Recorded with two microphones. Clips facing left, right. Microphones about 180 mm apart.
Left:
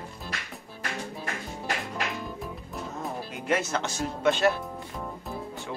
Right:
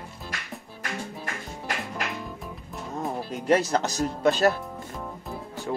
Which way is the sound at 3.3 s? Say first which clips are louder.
Right 6 dB; 35° right (ahead or behind).